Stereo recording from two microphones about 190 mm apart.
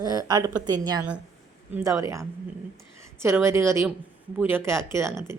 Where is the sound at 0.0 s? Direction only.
20° right (ahead or behind).